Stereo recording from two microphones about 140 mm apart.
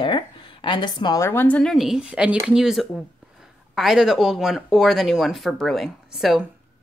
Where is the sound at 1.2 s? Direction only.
15° left (ahead or behind).